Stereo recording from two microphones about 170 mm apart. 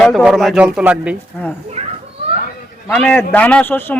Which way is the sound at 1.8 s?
40° right (ahead or behind).